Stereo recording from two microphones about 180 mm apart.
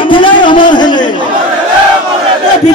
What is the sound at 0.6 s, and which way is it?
Chatter, 25° left (ahead or behind).